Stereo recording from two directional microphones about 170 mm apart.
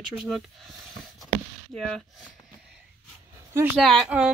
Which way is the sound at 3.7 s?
Centre (ahead or behind).